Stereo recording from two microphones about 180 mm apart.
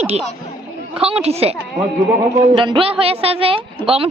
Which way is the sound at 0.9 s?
35° right (ahead or behind).